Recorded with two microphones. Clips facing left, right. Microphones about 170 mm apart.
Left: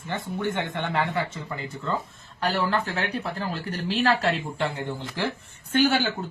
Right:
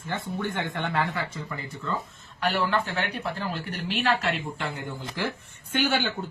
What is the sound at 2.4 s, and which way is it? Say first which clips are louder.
Speech: left 1 dB; 40° left (ahead or behind).